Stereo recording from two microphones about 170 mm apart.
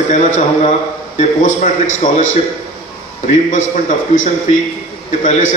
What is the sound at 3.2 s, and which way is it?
A man's voice, 45° left (ahead or behind).